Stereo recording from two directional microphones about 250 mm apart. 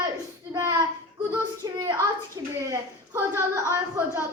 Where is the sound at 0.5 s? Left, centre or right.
Centre.